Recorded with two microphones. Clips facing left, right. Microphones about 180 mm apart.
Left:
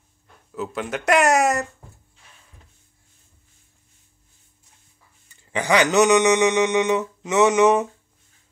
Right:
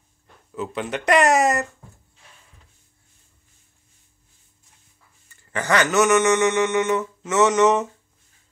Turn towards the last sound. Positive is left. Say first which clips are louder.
# left 1 dB
turn(degrees=10)  # may be behind; listen again after turning